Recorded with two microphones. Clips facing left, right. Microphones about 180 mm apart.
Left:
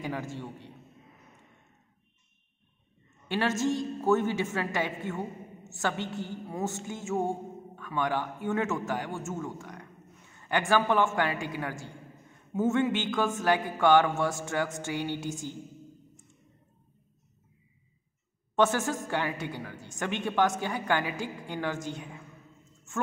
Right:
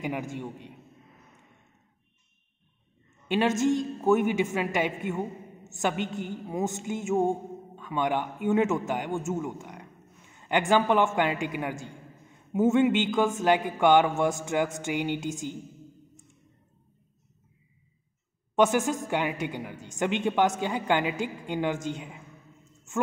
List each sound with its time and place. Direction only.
0.0 s a man's voice: 15° right (ahead or behind)
3.3 s a woman's voice: 20° right (ahead or behind)
18.6 s a woman's voice: 15° right (ahead or behind)